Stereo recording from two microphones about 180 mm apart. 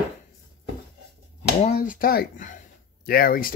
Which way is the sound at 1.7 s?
50° left (ahead or behind).